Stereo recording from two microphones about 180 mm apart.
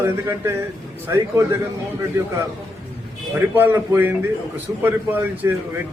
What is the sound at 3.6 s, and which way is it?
Speech, 10° right (ahead or behind).